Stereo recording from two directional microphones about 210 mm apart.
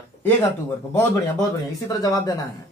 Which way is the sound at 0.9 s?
15° left (ahead or behind).